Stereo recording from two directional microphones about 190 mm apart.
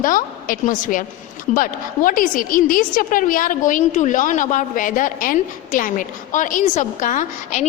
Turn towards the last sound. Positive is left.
turn(degrees=40)  # may be behind; listen again after turning